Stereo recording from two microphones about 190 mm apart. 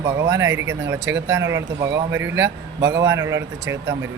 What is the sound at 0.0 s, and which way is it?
A man's voice, 15° right (ahead or behind).